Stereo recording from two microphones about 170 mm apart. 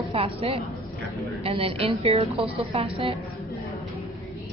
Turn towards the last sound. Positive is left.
turn(degrees=-35)  # may be behind; listen again after turning